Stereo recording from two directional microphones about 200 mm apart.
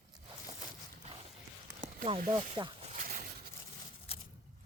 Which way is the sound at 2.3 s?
25° right (ahead or behind).